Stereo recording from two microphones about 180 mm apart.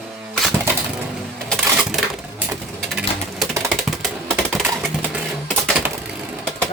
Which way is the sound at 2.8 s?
Centre (ahead or behind).